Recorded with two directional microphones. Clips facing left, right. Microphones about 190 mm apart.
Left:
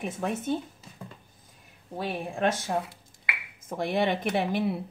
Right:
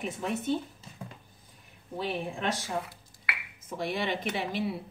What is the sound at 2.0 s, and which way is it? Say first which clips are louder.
Speech: left 3 dB; 50° left (ahead or behind).